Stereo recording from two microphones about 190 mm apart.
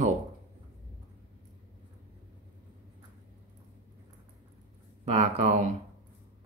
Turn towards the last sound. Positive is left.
turn(degrees=-40)  # may be behind; listen again after turning